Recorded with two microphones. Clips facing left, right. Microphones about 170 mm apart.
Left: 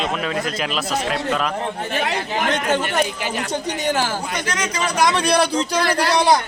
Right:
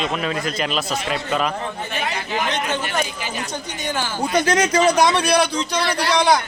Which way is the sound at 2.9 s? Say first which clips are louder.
Left 3 dB; 70° left (ahead or behind).